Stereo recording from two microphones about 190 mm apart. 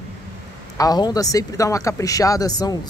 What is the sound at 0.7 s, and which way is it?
Speech, 20° left (ahead or behind).